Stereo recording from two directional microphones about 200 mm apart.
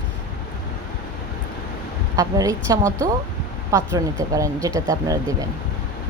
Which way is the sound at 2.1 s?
15° right (ahead or behind).